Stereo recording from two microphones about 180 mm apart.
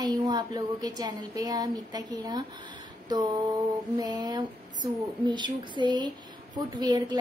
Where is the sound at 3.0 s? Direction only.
20° right (ahead or behind).